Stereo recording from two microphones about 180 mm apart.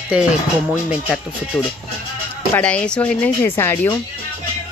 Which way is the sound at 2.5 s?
5° left (ahead or behind).